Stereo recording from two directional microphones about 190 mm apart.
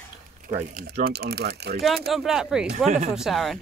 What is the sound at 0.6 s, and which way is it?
Speech, 45° right (ahead or behind).